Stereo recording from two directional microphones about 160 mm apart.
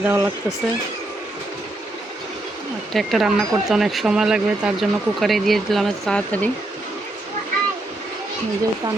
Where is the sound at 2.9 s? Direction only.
Centre (ahead or behind).